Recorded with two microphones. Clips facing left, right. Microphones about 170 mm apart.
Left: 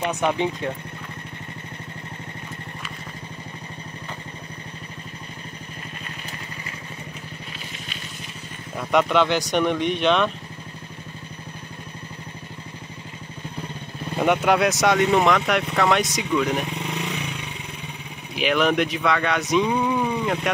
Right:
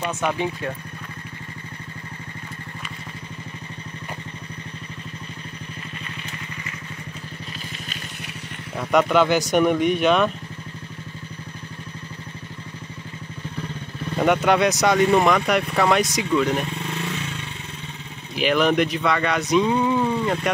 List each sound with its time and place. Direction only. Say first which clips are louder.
0.0 s speech: left 2 dB; 15° left (ahead or behind)
8.7 s speech: right 1 dB; centre (ahead or behind)
14.1 s speech: right 1 dB; centre (ahead or behind)
16.6 s vehicle: even; 15° left (ahead or behind)
18.3 s speech: right 1 dB; centre (ahead or behind)
20.5 s speech: right 1 dB; centre (ahead or behind)